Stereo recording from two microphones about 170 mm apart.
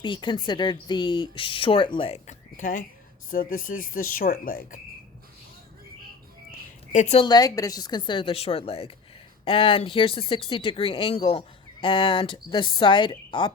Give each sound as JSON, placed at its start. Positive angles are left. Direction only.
{"t": 0.0, "sound": "speech", "side_deg": 30}
{"t": 6.9, "sound": "a woman's voice", "side_deg": 45}
{"t": 7.2, "sound": "speech", "side_deg": 25}